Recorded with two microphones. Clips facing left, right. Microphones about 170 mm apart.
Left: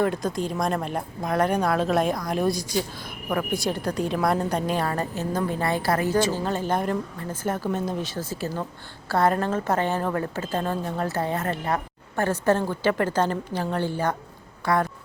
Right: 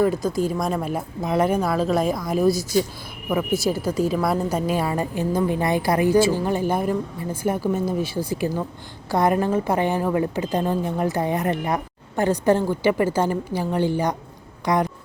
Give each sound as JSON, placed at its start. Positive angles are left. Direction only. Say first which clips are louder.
{"t": 0.0, "sound": "a woman's voice", "louder": "right 4 dB", "side_deg": 0}